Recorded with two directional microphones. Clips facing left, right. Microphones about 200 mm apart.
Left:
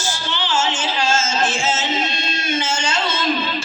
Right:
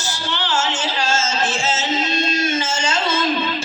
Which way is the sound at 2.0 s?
45° right (ahead or behind).